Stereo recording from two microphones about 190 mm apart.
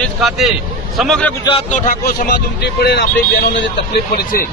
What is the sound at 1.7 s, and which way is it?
A man's voice, 45° left (ahead or behind).